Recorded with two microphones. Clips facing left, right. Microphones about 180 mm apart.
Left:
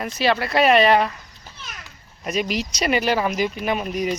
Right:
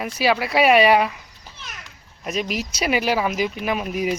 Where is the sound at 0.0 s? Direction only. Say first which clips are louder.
Even; 5° right (ahead or behind).